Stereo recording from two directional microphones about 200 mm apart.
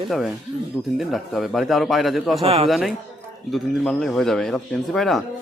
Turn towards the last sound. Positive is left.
turn(degrees=0)  # may be behind; listen again after turning